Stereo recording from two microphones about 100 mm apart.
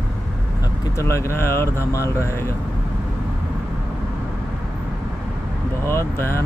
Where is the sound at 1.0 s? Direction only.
30° left (ahead or behind).